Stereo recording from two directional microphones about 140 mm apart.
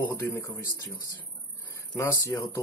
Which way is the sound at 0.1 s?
20° left (ahead or behind).